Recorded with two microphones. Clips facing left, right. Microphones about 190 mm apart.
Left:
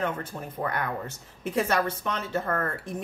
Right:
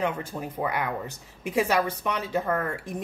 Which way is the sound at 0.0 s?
10° right (ahead or behind).